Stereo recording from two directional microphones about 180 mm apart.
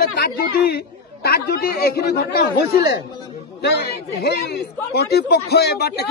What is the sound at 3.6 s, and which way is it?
Speech, 65° left (ahead or behind).